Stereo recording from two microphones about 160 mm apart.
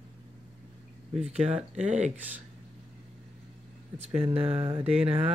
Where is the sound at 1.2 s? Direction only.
45° right (ahead or behind).